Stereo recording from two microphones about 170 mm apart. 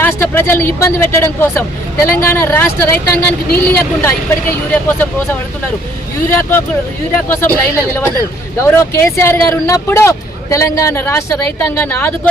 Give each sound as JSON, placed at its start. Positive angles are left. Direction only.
{"t": 0.0, "sound": "speech", "side_deg": 10}
{"t": 7.3, "sound": "speech", "side_deg": 15}